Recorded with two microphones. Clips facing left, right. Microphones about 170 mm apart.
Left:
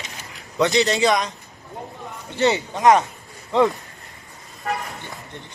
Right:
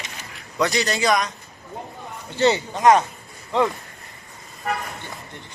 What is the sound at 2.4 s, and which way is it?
Speech, 20° left (ahead or behind).